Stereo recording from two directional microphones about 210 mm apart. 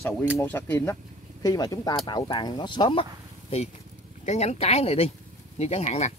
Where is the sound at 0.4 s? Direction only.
10° left (ahead or behind).